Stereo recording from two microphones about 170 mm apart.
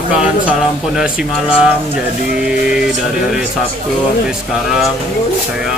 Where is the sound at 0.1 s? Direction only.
5° right (ahead or behind).